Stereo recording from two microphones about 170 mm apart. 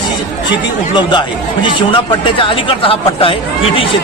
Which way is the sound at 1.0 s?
30° left (ahead or behind).